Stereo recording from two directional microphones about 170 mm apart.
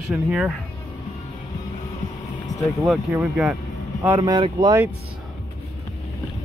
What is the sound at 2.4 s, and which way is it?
Vehicle, 20° left (ahead or behind).